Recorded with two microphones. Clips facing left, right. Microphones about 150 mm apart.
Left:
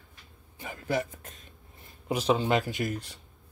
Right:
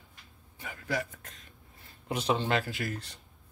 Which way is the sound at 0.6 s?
25° left (ahead or behind).